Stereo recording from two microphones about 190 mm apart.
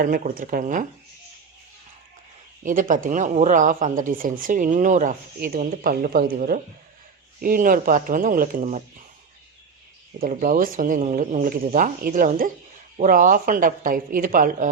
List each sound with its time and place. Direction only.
0.0 s speech: 50° right (ahead or behind)
2.6 s speech: 45° right (ahead or behind)
10.2 s speech: 45° right (ahead or behind)